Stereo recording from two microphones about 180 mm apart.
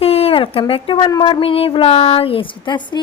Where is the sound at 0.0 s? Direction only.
35° left (ahead or behind).